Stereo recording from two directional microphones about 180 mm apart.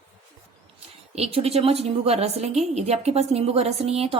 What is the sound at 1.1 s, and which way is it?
A woman's voice, 35° right (ahead or behind).